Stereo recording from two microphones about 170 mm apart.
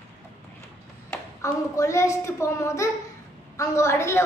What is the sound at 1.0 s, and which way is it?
A woman's voice, 15° left (ahead or behind).